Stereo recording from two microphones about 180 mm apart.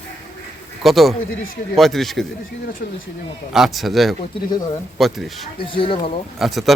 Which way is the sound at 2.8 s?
60° left (ahead or behind).